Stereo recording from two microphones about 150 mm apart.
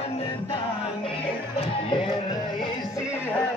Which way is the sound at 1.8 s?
35° left (ahead or behind).